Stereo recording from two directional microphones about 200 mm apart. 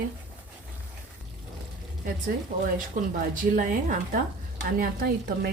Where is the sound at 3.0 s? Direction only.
45° right (ahead or behind).